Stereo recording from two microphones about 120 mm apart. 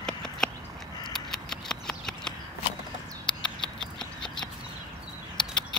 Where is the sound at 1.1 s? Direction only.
5° left (ahead or behind).